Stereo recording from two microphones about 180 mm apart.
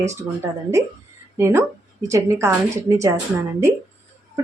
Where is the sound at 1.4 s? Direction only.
15° right (ahead or behind).